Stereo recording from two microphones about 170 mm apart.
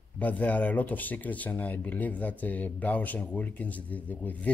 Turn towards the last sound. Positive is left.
turn(degrees=10)  # may be behind; listen again after turning